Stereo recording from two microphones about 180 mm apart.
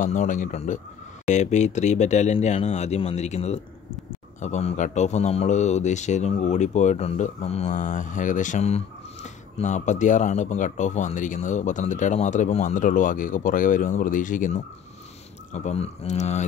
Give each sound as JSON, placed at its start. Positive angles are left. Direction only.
{"t": 0.0, "sound": "speech", "side_deg": 45}